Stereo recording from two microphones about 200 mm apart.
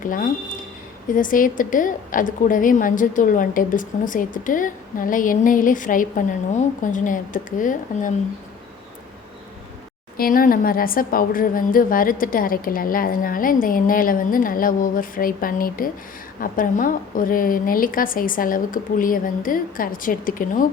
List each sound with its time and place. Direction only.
0.0 s a woman's voice: 45° left (ahead or behind)
10.2 s a woman's voice: 45° left (ahead or behind)